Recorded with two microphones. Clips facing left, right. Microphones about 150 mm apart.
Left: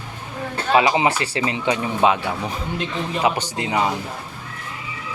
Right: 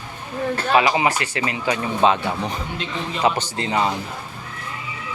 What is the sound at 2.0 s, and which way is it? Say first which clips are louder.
Speech: right 1 dB; 10° left (ahead or behind).